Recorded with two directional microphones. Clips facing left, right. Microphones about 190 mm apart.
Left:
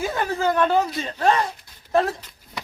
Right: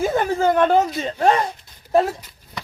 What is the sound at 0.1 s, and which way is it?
Speech, 25° right (ahead or behind).